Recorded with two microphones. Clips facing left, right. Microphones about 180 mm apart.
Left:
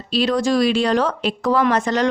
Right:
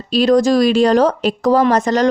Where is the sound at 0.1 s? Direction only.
45° right (ahead or behind).